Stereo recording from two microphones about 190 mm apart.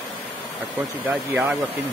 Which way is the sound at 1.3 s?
5° right (ahead or behind).